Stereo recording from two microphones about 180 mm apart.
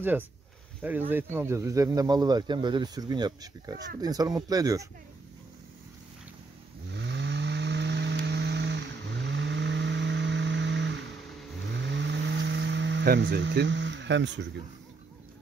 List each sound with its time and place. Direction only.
0.8 s speech: 10° right (ahead or behind)
6.9 s vehicle: 75° right (ahead or behind)
13.2 s speech: 90° right